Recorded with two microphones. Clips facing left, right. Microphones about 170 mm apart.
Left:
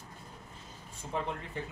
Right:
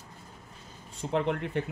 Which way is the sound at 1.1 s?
70° right (ahead or behind).